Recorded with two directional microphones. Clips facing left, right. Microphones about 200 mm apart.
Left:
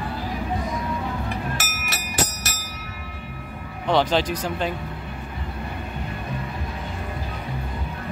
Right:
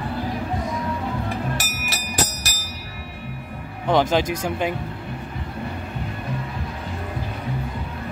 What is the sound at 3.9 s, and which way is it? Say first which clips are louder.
Speech: right 1 dB; 10° right (ahead or behind).